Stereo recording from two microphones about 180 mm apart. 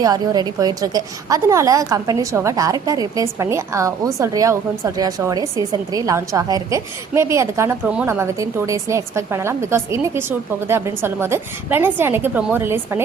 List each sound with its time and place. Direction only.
0.0 s a woman's voice: 20° right (ahead or behind)